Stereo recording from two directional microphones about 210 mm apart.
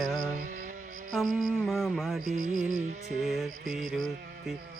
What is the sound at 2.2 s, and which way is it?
Music, 40° right (ahead or behind).